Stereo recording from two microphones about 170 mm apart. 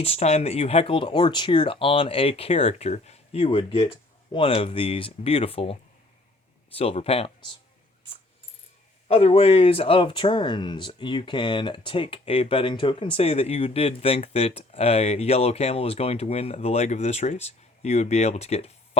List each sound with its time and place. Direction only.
0.0 s speech: 40° left (ahead or behind)
6.7 s speech: 35° left (ahead or behind)
9.0 s speech: 35° left (ahead or behind)